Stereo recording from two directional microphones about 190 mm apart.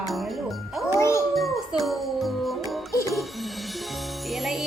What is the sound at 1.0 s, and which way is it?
Speech, 15° left (ahead or behind).